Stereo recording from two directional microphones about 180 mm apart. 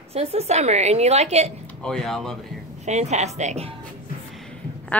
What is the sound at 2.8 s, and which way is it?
Speech, 40° right (ahead or behind).